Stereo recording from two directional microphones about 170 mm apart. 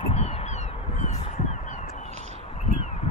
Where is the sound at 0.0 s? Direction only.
35° left (ahead or behind).